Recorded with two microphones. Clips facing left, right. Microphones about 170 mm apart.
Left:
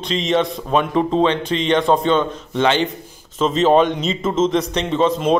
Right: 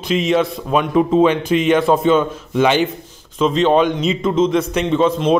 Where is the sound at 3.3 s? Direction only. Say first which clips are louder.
Even; centre (ahead or behind).